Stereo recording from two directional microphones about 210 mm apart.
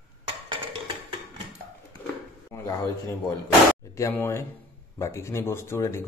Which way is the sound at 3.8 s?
15° left (ahead or behind).